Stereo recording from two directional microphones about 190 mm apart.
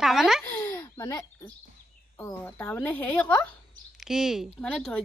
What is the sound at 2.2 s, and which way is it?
Speech, 10° left (ahead or behind).